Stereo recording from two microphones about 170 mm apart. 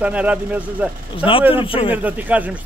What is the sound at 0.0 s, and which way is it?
Speech, 10° right (ahead or behind).